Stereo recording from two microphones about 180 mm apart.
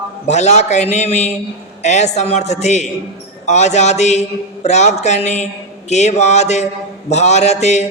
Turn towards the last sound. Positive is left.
turn(degrees=40)  # may be behind; listen again after turning